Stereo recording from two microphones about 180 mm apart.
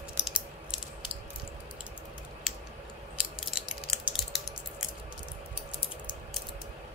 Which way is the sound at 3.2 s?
5° right (ahead or behind).